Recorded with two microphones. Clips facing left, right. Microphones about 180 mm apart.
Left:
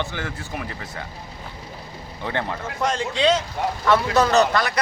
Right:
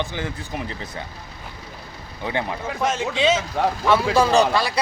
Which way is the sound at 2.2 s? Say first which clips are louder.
Right 1 dB; 15° right (ahead or behind).